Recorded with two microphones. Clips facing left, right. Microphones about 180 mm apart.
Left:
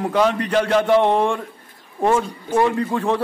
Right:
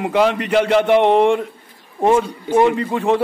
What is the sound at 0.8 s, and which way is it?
Speech, 20° right (ahead or behind).